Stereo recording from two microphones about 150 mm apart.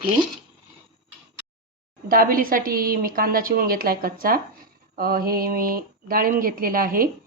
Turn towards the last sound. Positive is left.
turn(degrees=-70)  # may be behind; listen again after turning